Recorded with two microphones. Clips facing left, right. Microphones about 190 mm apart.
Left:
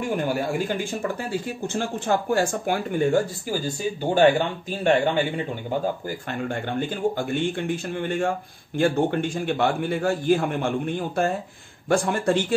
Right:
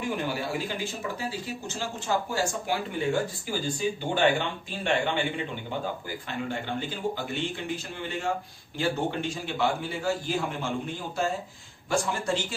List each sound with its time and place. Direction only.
0.1 s a man's voice: 50° left (ahead or behind)